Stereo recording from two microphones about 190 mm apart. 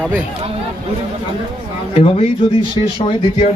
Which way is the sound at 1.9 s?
30° left (ahead or behind).